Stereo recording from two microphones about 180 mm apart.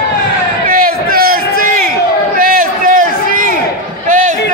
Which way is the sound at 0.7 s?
55° right (ahead or behind).